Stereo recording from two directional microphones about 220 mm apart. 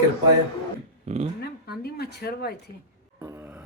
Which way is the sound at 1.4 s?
45° left (ahead or behind).